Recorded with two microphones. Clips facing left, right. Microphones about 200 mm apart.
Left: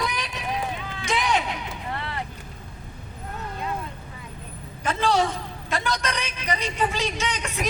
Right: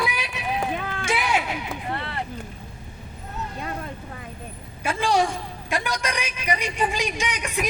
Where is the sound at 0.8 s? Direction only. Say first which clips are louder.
Right 5 dB; 55° right (ahead or behind).